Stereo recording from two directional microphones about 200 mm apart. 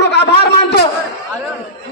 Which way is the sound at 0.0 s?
55° left (ahead or behind).